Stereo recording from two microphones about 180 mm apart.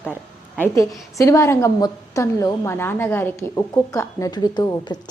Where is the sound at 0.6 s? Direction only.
15° left (ahead or behind).